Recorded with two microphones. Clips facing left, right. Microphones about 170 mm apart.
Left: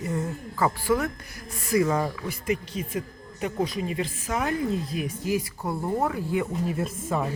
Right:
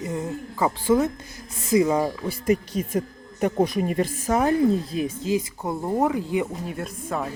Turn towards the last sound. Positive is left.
turn(degrees=0)  # may be behind; listen again after turning